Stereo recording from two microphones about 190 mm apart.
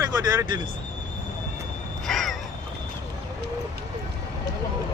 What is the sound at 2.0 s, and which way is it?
Crow, centre (ahead or behind).